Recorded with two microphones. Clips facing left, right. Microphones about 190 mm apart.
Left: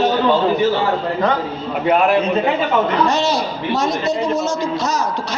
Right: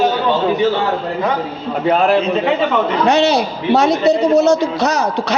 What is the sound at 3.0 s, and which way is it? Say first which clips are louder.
A man's voice: right 5 dB; 65° right (ahead or behind).